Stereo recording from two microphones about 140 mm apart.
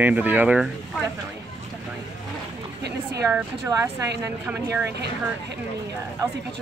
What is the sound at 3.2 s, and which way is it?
A woman's voice, 20° right (ahead or behind).